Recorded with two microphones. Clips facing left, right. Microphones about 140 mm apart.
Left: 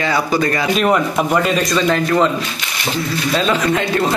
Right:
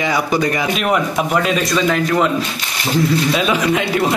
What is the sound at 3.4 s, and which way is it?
Speech, 10° right (ahead or behind).